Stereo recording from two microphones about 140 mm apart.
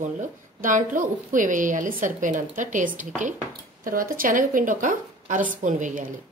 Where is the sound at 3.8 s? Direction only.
85° right; by 6.1 s 70° right (ahead or behind).